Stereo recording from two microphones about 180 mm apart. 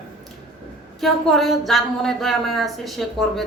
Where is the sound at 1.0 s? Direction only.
Centre (ahead or behind).